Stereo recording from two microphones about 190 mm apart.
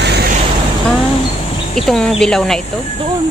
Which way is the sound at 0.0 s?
60° right (ahead or behind).